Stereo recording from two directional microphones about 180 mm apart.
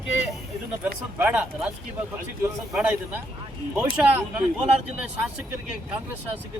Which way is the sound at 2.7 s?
5° right (ahead or behind).